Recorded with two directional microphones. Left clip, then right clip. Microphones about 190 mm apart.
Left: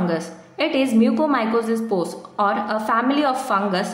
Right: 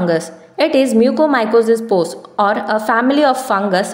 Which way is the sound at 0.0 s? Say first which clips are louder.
Right 7 dB; 35° right (ahead or behind).